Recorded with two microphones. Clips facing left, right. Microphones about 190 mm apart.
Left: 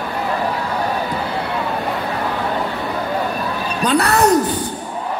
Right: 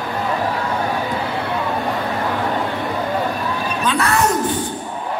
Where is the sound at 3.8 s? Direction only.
40° left (ahead or behind).